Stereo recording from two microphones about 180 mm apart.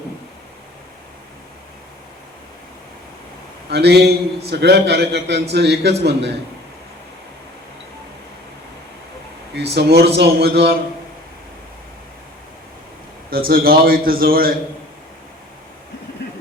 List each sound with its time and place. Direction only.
3.7 s a man's voice: 65° right (ahead or behind)
9.7 s a man's voice: 65° right (ahead or behind)
13.3 s a man's voice: 55° right (ahead or behind)